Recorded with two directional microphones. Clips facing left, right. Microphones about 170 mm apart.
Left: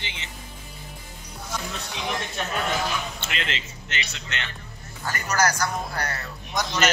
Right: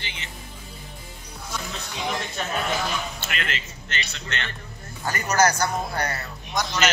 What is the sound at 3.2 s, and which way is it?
Speech, 25° left (ahead or behind).